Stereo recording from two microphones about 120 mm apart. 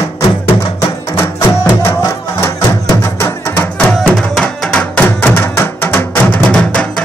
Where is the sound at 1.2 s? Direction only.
20° left (ahead or behind).